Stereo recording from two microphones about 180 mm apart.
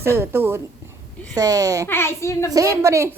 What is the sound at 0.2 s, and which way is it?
A woman's voice, 10° right (ahead or behind).